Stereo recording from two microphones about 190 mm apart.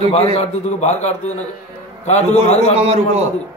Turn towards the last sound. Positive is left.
turn(degrees=-35)  # may be behind; listen again after turning